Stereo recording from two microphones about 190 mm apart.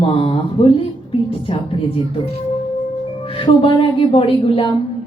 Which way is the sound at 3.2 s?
30° left (ahead or behind).